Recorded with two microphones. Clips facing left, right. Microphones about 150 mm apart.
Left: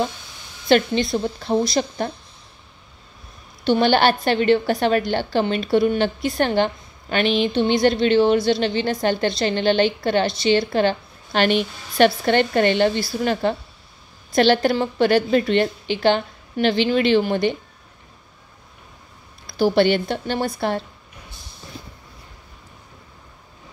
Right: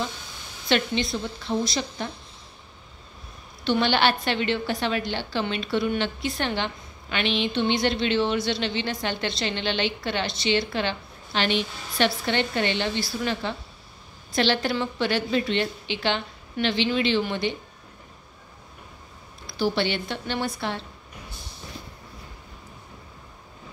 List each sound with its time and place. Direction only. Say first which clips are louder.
0.7 s a woman's voice: left 7 dB; 45° left (ahead or behind)
3.6 s a woman's voice: left 5 dB; 40° left (ahead or behind)
19.6 s a woman's voice: left 8 dB; 50° left (ahead or behind)